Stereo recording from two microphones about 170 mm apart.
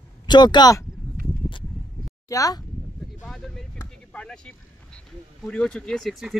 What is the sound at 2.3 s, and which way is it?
Speech, 20° left (ahead or behind).